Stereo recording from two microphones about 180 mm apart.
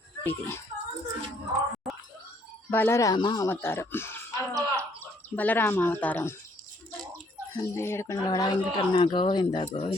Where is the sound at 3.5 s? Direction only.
10° left (ahead or behind).